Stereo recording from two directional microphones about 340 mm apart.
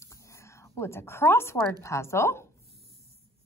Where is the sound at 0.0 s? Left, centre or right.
Centre.